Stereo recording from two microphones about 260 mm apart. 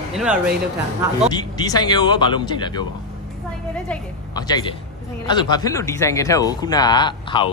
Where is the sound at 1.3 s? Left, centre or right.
Centre.